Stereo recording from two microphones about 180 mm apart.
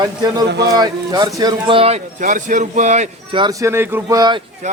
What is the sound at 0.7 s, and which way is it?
Speech, 20° right (ahead or behind).